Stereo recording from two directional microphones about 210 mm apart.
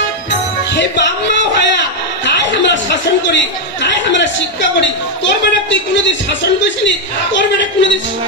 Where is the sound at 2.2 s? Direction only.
55° left (ahead or behind).